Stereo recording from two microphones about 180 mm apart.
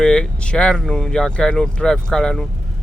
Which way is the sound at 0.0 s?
5° left (ahead or behind).